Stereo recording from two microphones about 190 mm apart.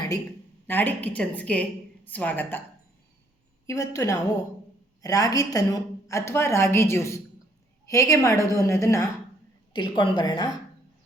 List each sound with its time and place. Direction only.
0.7 s a woman's voice: 10° left (ahead or behind)
3.7 s a woman's voice: 15° left (ahead or behind)